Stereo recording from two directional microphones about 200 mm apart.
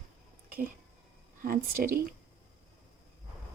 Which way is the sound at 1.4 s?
45° right (ahead or behind).